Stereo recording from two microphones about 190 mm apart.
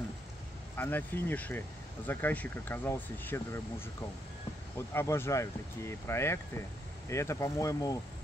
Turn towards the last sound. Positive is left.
turn(degrees=15)  # may be behind; listen again after turning